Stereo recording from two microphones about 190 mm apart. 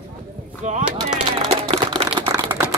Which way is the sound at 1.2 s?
30° right (ahead or behind).